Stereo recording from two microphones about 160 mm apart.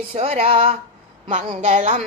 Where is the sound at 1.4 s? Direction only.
55° right (ahead or behind).